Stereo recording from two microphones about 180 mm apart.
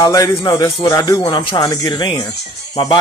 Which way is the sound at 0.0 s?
25° left (ahead or behind).